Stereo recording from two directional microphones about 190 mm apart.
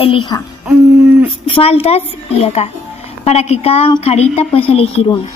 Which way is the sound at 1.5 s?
30° left (ahead or behind).